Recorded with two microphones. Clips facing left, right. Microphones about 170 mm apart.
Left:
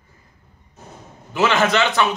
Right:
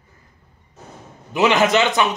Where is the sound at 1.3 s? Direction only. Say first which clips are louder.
Right 2 dB; 15° right (ahead or behind).